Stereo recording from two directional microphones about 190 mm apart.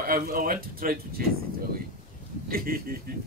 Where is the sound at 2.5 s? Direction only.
50° right (ahead or behind).